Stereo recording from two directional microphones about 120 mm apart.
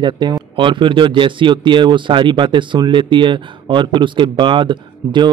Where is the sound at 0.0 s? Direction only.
35° right (ahead or behind).